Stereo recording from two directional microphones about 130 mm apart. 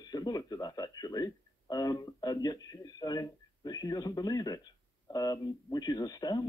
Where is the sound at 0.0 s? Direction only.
30° left (ahead or behind).